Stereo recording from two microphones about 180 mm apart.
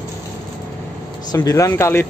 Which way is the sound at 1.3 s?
15° left (ahead or behind).